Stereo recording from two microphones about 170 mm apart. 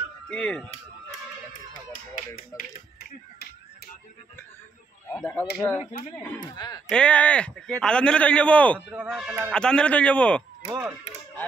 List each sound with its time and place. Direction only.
0.3 s speech: 5° left (ahead or behind)
1.9 s speech: 55° left (ahead or behind)
5.1 s a man's voice: 10° left (ahead or behind)
6.4 s speech: 25° left (ahead or behind)
6.9 s a man's voice: 5° left (ahead or behind)
8.7 s speech: 5° right (ahead or behind)
9.5 s a man's voice: 5° left (ahead or behind)
10.7 s speech: 15° right (ahead or behind)